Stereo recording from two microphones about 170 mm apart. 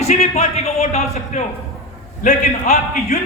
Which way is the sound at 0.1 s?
40° left (ahead or behind).